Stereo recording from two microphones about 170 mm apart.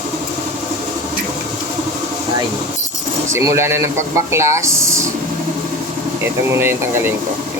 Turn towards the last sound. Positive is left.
turn(degrees=-15)  # may be behind; listen again after turning